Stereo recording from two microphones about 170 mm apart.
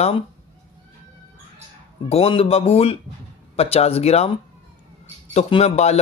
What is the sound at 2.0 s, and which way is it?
A man's voice, 35° left (ahead or behind).